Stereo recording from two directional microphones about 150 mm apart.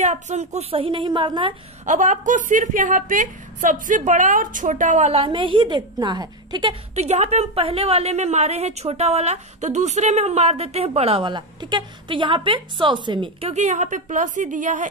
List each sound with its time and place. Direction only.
0.0 s a woman's voice: 50° right (ahead or behind); by 1.5 s 30° right (ahead or behind)
1.9 s a woman's voice: 55° right (ahead or behind)
5.2 s a woman's voice: 35° right (ahead or behind)
7.0 s a woman's voice: 45° right (ahead or behind)